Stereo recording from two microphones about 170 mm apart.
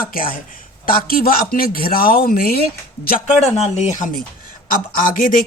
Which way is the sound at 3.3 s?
40° left (ahead or behind).